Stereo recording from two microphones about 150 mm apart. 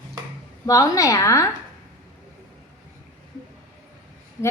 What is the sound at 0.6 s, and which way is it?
Speech, 25° left (ahead or behind).